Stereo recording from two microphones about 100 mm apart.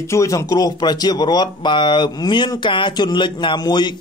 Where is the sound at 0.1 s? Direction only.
30° left (ahead or behind).